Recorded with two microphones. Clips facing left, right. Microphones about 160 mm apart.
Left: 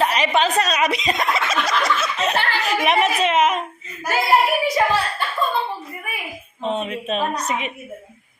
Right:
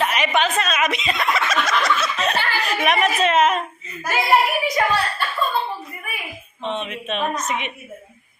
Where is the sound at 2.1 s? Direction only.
20° left (ahead or behind).